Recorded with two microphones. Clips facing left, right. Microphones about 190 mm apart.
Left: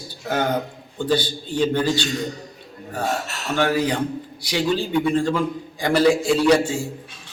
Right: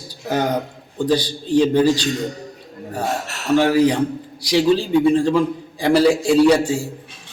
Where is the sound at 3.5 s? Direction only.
30° right (ahead or behind).